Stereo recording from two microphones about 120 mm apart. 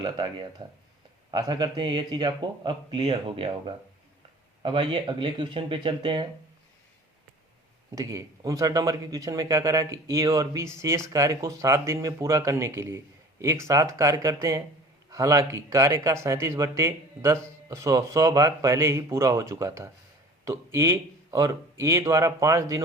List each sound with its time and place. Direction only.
0.0 s a man's voice: 35° right (ahead or behind)
4.6 s speech: 45° right (ahead or behind)
7.9 s speech: 25° right (ahead or behind)